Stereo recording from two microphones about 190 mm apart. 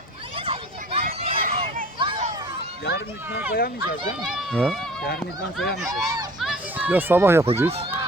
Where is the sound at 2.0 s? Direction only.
25° right (ahead or behind).